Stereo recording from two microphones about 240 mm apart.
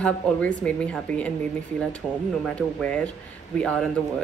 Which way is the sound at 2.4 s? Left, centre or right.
Centre.